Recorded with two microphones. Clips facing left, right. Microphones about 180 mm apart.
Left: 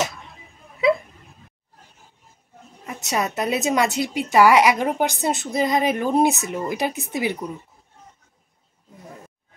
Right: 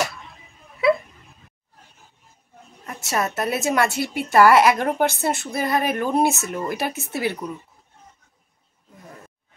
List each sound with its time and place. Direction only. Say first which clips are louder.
3.0 s a woman's voice: even; 20° left (ahead or behind)